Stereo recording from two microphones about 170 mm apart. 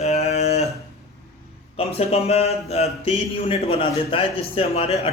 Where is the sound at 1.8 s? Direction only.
35° left (ahead or behind).